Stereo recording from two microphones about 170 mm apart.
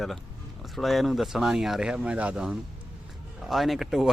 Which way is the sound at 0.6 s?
Centre (ahead or behind).